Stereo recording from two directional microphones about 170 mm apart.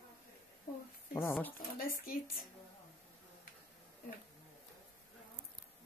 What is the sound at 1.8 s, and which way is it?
Speech, 60° left (ahead or behind).